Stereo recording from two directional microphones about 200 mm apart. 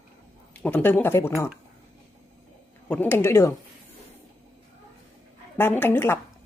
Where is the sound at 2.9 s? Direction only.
10° left (ahead or behind).